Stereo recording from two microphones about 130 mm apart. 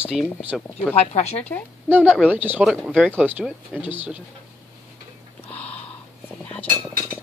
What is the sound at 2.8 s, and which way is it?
Speech, 5° left (ahead or behind).